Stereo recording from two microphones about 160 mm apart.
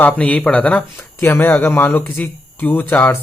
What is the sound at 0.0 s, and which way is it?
Speech, 10° left (ahead or behind).